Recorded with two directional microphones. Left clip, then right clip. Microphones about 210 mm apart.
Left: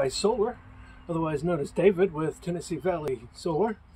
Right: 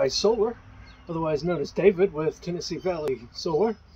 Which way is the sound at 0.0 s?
20° left (ahead or behind).